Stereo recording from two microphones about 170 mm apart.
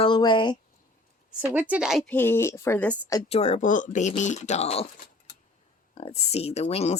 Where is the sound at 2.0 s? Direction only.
10° left (ahead or behind).